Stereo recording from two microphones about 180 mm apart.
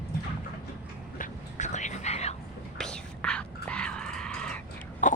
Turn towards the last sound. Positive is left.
turn(degrees=45)  # may be behind; listen again after turning